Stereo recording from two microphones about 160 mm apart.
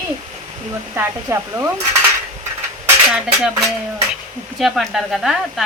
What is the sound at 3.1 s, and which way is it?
Speech, 5° right (ahead or behind).